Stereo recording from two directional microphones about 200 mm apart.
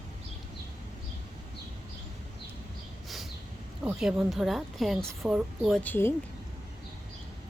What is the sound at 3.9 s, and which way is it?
Speech, 5° right (ahead or behind).